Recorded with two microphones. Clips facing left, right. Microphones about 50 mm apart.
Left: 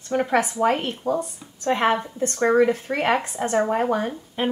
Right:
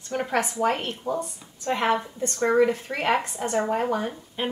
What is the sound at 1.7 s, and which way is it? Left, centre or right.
A woman's voice, left.